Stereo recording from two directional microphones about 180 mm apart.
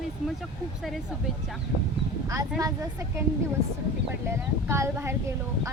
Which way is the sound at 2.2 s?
20° right (ahead or behind).